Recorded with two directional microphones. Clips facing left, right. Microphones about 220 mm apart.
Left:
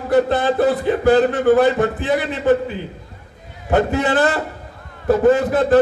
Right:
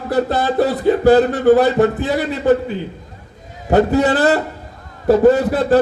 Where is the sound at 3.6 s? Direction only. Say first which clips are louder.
Right 4 dB; 40° right (ahead or behind).